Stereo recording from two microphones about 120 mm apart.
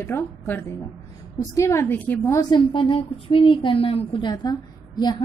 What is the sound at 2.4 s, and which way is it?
A woman's voice, 40° left (ahead or behind).